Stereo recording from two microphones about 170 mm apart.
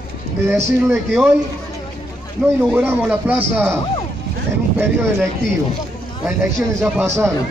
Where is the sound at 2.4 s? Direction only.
Centre (ahead or behind).